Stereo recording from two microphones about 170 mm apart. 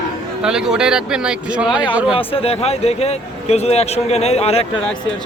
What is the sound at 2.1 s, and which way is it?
Speech, 35° left (ahead or behind).